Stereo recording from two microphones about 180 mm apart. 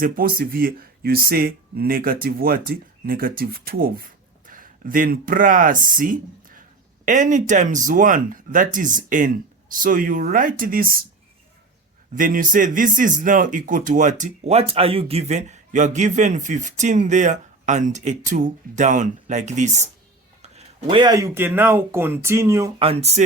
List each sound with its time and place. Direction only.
0.0 s a man's voice: 55° right (ahead or behind)
12.1 s a man's voice: 50° right (ahead or behind); by 22.7 s 15° right (ahead or behind)
22.8 s speech: 35° right (ahead or behind)